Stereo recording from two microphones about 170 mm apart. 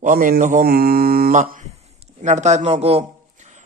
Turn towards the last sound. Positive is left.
turn(degrees=-35)  # may be behind; listen again after turning